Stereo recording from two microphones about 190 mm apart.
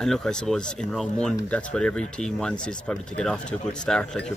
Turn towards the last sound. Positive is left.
turn(degrees=5)  # may be behind; listen again after turning